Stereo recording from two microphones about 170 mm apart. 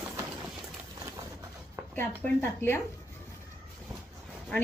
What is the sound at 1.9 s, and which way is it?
Speech, 10° left (ahead or behind).